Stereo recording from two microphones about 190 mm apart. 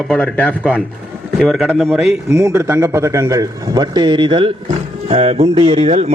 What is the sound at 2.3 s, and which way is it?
A man's voice, 15° right (ahead or behind).